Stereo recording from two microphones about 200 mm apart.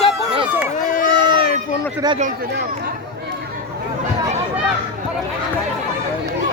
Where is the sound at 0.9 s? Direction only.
45° left (ahead or behind).